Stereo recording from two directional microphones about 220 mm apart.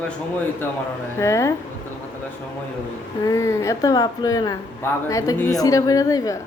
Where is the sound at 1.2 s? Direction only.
15° left (ahead or behind).